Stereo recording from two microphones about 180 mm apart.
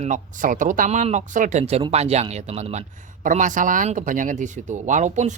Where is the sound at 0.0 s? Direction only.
45° right (ahead or behind).